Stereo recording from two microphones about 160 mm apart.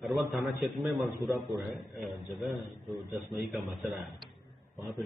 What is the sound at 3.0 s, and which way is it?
Speech, 20° right (ahead or behind).